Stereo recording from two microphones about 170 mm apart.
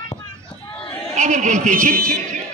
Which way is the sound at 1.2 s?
45° right (ahead or behind).